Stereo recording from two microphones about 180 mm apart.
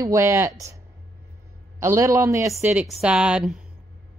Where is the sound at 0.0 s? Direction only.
15° right (ahead or behind).